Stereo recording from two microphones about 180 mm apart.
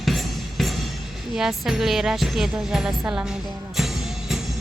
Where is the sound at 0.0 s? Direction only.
Centre (ahead or behind).